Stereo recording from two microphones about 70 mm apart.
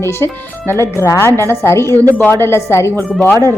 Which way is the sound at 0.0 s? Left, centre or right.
Left.